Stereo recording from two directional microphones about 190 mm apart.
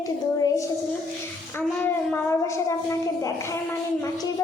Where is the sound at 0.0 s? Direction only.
15° left (ahead or behind).